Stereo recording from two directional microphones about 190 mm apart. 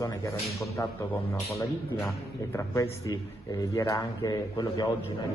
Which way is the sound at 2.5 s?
15° left (ahead or behind).